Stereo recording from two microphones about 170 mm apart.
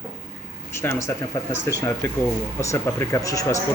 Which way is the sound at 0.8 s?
15° left (ahead or behind).